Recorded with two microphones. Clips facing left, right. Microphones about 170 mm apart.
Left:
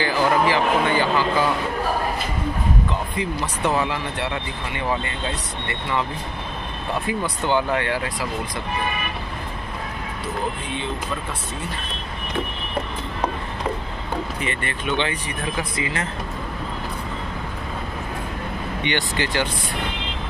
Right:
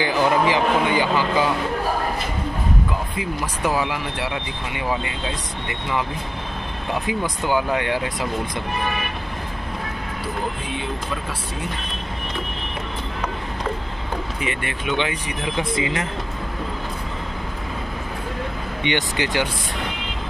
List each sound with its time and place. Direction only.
0.0 s a man's voice: 15° right (ahead or behind)
3.2 s a man's voice: 5° right (ahead or behind)
7.1 s a man's voice: 10° right (ahead or behind)
14.4 s a man's voice: 10° right (ahead or behind)
18.9 s a man's voice: 20° right (ahead or behind)